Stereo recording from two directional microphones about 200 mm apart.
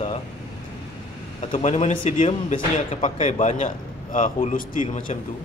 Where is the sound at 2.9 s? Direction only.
40° left (ahead or behind).